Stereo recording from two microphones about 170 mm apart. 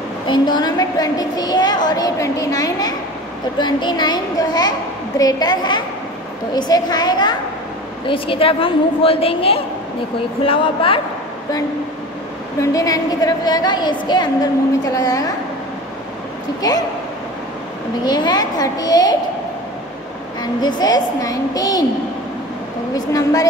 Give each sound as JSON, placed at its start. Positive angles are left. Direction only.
{"t": 0.3, "sound": "a woman's voice", "side_deg": 25}
{"t": 12.6, "sound": "a woman's voice", "side_deg": 20}
{"t": 18.0, "sound": "a woman's voice", "side_deg": 25}
{"t": 20.6, "sound": "a woman's voice", "side_deg": 25}
{"t": 22.9, "sound": "a woman's voice", "side_deg": 20}